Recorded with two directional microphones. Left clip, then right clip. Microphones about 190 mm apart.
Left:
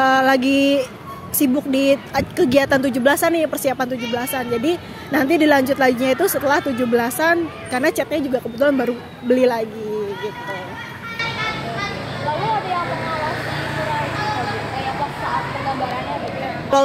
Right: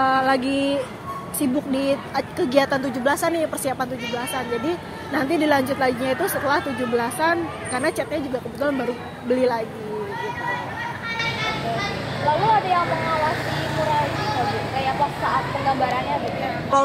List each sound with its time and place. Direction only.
0.0 s mantra: 55° left (ahead or behind)
1.4 s speech: 55° left (ahead or behind)
11.1 s music: centre (ahead or behind)